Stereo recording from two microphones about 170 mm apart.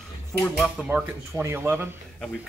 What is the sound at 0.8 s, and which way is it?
Speech, 5° right (ahead or behind).